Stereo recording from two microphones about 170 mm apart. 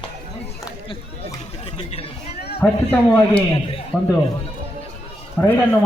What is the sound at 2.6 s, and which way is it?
A man's voice, 10° left (ahead or behind).